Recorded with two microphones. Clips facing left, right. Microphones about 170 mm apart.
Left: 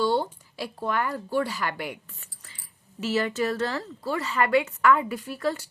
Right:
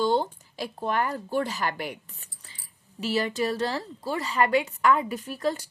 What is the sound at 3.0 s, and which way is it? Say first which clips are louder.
Speech: left 1 dB; 15° right (ahead or behind).